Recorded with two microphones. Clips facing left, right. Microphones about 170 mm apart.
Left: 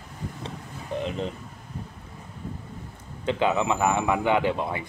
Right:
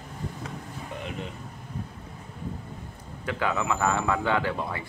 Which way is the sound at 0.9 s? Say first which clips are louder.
Left 9 dB; 35° left (ahead or behind).